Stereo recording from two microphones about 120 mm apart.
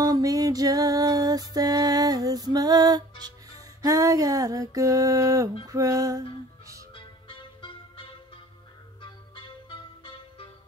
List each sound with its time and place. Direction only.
0.0 s music: 30° right (ahead or behind)
7.2 s music: 45° left (ahead or behind)